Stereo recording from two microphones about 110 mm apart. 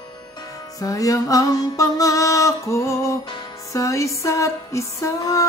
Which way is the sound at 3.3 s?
40° left (ahead or behind).